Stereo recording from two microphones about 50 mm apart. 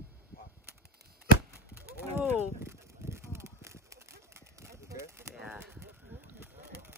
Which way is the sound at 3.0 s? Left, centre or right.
Right.